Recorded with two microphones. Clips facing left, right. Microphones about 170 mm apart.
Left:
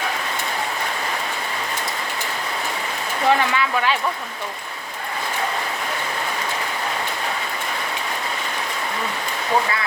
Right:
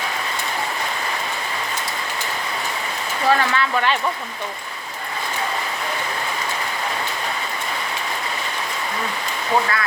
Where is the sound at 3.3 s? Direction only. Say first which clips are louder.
Even; 15° left (ahead or behind).